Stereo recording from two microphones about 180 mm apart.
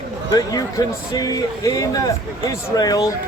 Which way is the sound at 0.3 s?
20° left (ahead or behind).